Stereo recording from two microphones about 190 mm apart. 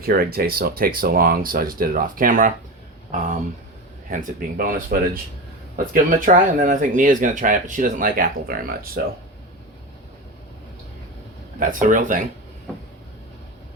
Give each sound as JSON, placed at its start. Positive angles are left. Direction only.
{"t": 0.0, "sound": "speech", "side_deg": -55}
{"t": 4.1, "sound": "speech", "side_deg": -45}
{"t": 11.6, "sound": "speech", "side_deg": -45}